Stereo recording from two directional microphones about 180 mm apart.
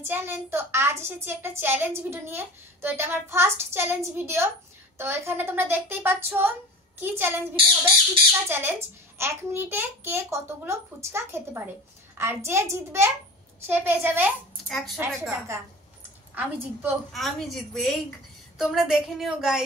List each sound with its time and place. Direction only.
0.0 s a woman's voice: 10° right (ahead or behind)
7.5 s squawk: 30° right (ahead or behind)
8.5 s a woman's voice: 10° right (ahead or behind)
17.1 s a woman's voice: centre (ahead or behind)